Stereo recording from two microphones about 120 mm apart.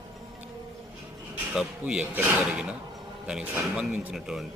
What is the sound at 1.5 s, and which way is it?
Speech, 10° right (ahead or behind).